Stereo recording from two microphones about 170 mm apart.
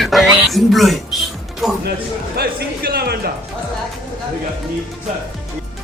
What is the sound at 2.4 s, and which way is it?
Speech, 65° right (ahead or behind).